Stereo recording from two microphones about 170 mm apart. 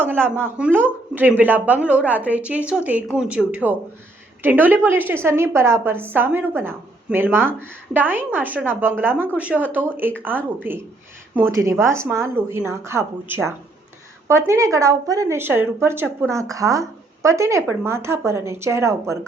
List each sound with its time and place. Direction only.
0.5 s a woman's voice: 10° right (ahead or behind)